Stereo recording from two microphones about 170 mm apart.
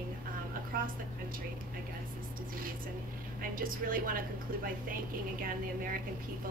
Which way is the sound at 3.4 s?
55° right (ahead or behind).